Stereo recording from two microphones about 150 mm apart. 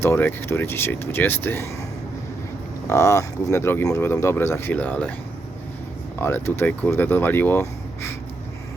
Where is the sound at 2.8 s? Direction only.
20° left (ahead or behind).